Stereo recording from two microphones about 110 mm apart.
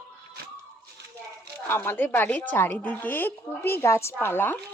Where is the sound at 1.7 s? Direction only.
20° left (ahead or behind).